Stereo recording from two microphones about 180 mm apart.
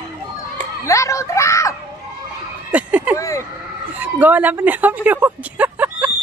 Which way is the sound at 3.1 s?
20° left (ahead or behind).